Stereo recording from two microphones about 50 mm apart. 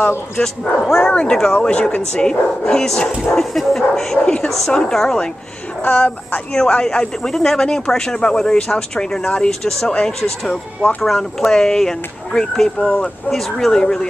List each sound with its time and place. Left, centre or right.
0.4 s speech: centre; by 2.0 s left
2.1 s a woman's voice: centre
5.9 s a woman's voice: left
6.5 s speech: centre